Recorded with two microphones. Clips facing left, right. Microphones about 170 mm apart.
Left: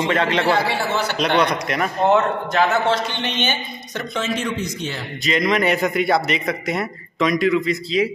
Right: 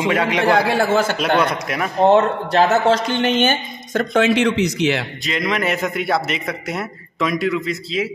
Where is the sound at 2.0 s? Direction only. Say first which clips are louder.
Right 4 dB; 35° right (ahead or behind); by 5.0 s 80° right.